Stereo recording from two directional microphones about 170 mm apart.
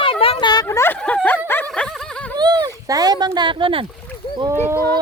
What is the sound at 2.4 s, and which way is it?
Speech, 25° right (ahead or behind).